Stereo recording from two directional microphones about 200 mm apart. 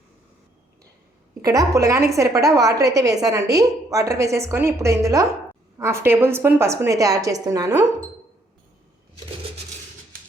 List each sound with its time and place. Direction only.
1.4 s a woman's voice: 15° right (ahead or behind)